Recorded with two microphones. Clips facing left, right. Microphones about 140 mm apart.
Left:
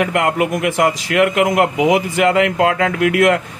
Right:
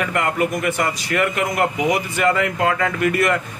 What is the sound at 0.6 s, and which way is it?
A man's voice, 90° left.